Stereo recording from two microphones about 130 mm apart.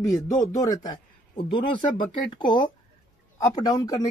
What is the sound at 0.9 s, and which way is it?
Speech, 40° left (ahead or behind).